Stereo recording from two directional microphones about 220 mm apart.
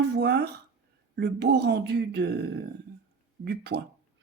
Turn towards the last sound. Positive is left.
turn(degrees=-50)  # may be behind; listen again after turning